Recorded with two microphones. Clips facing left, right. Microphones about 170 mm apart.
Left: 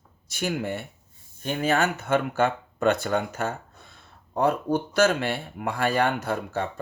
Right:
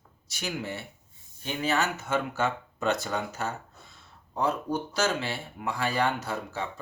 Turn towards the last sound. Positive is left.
turn(degrees=55)  # may be behind; listen again after turning